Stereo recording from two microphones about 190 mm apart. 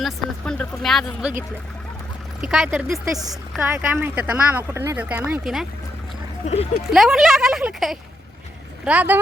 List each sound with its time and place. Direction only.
0.0 s speech: 5° left (ahead or behind)
2.4 s speech: 5° right (ahead or behind)
6.4 s speech: 35° left (ahead or behind)
6.9 s speech: centre (ahead or behind)